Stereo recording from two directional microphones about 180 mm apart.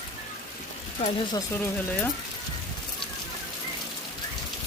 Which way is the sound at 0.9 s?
35° left (ahead or behind).